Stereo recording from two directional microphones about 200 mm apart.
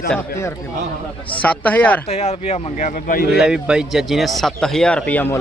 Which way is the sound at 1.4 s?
10° left (ahead or behind).